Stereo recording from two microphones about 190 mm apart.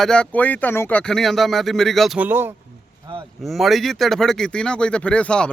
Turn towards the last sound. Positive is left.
turn(degrees=5)  # may be behind; listen again after turning